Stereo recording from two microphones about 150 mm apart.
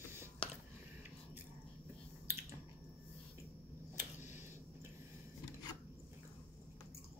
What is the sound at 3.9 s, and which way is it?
Tick, 55° left (ahead or behind).